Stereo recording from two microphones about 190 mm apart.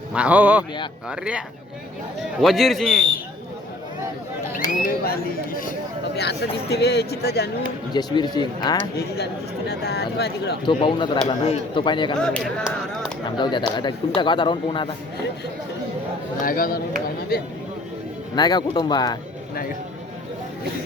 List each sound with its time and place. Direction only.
0.1 s speech: 5° right (ahead or behind)
4.7 s speech: 45° left (ahead or behind)
6.1 s speech: 60° left (ahead or behind)
7.9 s a man's voice: 20° left (ahead or behind)
9.0 s speech: 60° left (ahead or behind)
10.7 s a man's voice: 25° left (ahead or behind)
12.2 s speech: 5° left (ahead or behind)
13.2 s a man's voice: 25° left (ahead or behind)
16.4 s speech: 50° left (ahead or behind)
18.3 s a man's voice: 20° left (ahead or behind)